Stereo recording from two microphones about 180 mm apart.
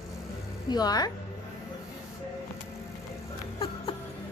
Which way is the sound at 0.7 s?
20° left (ahead or behind).